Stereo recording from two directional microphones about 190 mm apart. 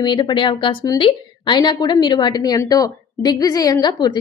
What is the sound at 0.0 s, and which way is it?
A woman's voice, 25° left (ahead or behind).